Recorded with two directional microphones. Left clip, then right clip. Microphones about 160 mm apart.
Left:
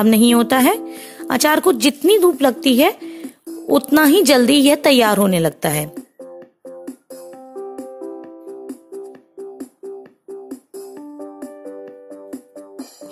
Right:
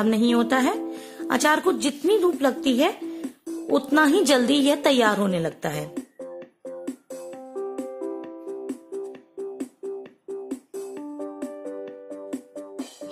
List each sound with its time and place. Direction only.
0.0 s a woman's voice: 55° left (ahead or behind)
5.9 s music: 20° right (ahead or behind)
8.0 s music: 20° right (ahead or behind)
11.1 s music: 30° right (ahead or behind)